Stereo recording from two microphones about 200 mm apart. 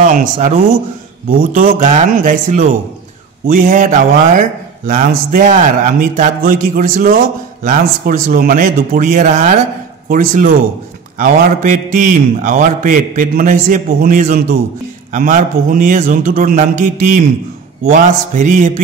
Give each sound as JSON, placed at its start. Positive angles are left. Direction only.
{"t": 0.0, "sound": "a man's voice", "side_deg": -40}